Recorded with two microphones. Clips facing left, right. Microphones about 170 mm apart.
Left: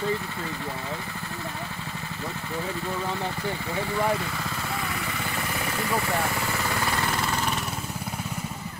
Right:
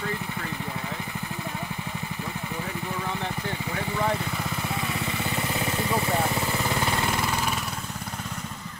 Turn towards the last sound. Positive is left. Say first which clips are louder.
# even
turn(degrees=-5)  # may be behind; listen again after turning